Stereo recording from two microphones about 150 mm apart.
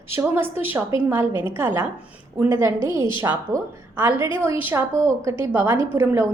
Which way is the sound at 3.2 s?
15° right (ahead or behind).